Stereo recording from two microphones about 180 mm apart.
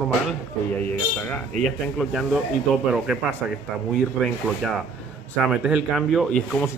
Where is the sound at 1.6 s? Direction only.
Centre (ahead or behind).